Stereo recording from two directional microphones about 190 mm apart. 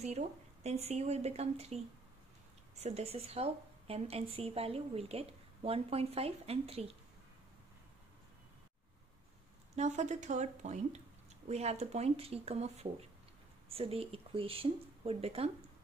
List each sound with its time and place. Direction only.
0.7 s a woman's voice: 35° right (ahead or behind)
2.8 s a woman's voice: 35° right (ahead or behind)
9.8 s a woman's voice: 40° right (ahead or behind)